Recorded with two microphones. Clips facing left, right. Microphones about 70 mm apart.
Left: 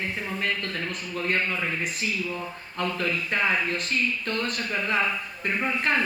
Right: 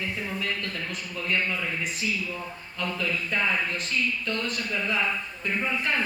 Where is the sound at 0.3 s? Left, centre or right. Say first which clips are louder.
Left 2 dB; left.